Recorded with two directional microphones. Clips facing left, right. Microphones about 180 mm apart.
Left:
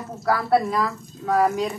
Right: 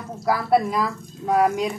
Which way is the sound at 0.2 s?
15° right (ahead or behind).